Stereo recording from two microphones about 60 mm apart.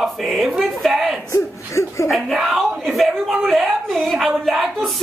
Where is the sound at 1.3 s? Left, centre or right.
Left.